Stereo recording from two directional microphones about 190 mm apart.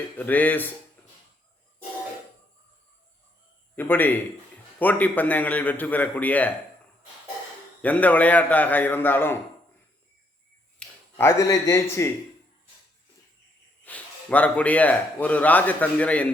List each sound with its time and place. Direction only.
0.2 s speech: 10° left (ahead or behind)
3.8 s speech: 10° left (ahead or behind)
7.8 s speech: 10° left (ahead or behind)
10.8 s speech: 15° left (ahead or behind)
13.8 s speech: 5° left (ahead or behind)